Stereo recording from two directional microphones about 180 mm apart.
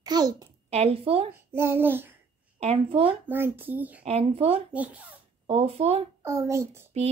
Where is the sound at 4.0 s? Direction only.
35° right (ahead or behind).